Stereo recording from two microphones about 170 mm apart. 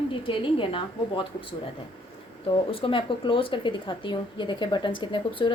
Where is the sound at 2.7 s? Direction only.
30° left (ahead or behind).